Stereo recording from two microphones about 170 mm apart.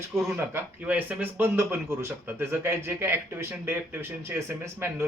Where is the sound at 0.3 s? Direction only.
10° right (ahead or behind).